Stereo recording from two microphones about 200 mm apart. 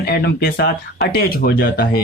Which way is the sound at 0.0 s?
55° left (ahead or behind).